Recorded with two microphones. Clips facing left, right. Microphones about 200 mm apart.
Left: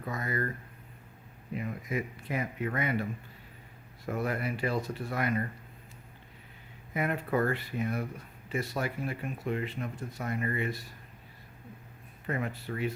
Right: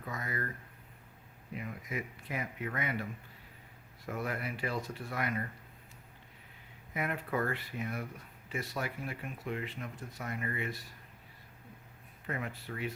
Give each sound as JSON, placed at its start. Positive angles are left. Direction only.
{"t": 0.0, "sound": "speech", "side_deg": 40}
{"t": 1.5, "sound": "speech", "side_deg": 40}
{"t": 6.9, "sound": "speech", "side_deg": 40}
{"t": 12.3, "sound": "speech", "side_deg": 40}